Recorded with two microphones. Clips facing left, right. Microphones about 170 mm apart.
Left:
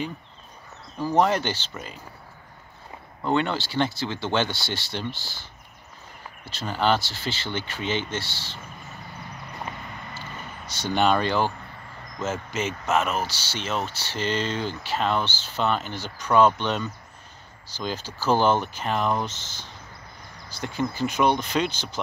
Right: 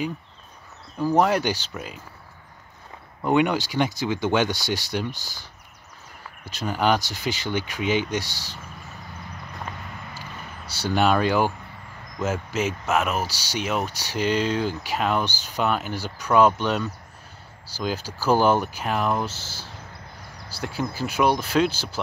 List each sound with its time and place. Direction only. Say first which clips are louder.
0.9 s speech: right 1 dB; 5° right (ahead or behind)
3.3 s speech: right 4 dB; 10° right (ahead or behind)
5.1 s speech: even; 45° right (ahead or behind)
6.6 s speech: right 1 dB; 10° right (ahead or behind)
10.7 s speech: right 1 dB; 5° right (ahead or behind)